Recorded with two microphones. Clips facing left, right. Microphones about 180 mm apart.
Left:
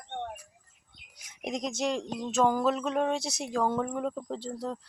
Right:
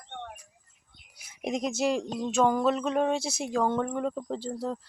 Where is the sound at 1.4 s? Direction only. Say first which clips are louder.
Right 3 dB; 5° right (ahead or behind).